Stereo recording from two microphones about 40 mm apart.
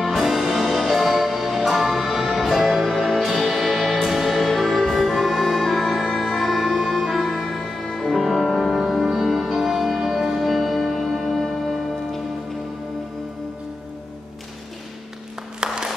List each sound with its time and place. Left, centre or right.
0.0 s music: centre
8.5 s music: centre
15.6 s a sound: centre